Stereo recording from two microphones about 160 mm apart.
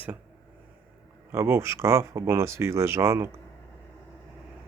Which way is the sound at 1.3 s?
15° right (ahead or behind).